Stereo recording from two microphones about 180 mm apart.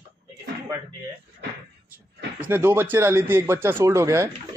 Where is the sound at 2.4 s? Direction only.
10° right (ahead or behind).